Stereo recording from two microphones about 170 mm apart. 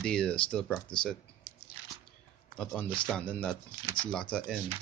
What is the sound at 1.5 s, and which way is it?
Biting, 65° right (ahead or behind).